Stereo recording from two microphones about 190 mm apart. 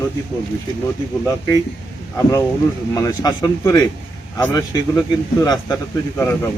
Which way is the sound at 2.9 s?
20° left (ahead or behind).